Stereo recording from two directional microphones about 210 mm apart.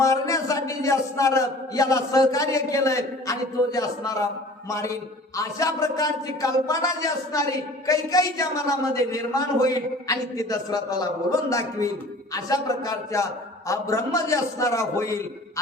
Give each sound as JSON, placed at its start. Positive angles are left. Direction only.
{"t": 0.0, "sound": "a man's voice", "side_deg": 15}